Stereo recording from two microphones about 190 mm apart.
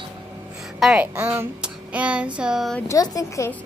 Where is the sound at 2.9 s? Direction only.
20° left (ahead or behind).